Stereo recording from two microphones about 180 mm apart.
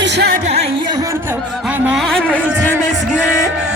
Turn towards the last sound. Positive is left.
turn(degrees=-5)  # may be behind; listen again after turning